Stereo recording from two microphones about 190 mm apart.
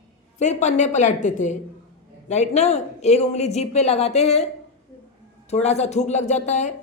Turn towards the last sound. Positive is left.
turn(degrees=40)  # may be behind; listen again after turning